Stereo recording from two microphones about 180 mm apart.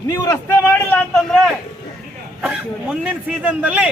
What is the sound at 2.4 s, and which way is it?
A man's voice, 5° right (ahead or behind).